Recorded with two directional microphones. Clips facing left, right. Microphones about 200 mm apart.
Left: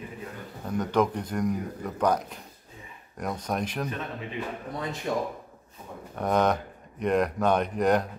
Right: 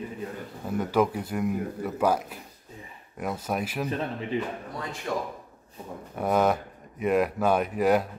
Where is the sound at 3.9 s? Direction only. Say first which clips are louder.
Right 4 dB; 30° right (ahead or behind).